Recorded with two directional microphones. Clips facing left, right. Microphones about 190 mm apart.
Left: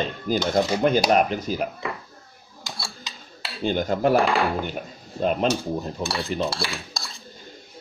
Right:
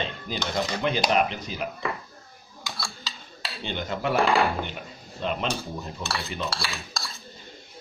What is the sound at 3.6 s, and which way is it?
Speech, 45° left (ahead or behind).